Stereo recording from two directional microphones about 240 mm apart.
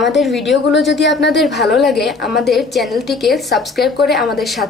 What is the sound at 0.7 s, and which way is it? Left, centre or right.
Speech, left.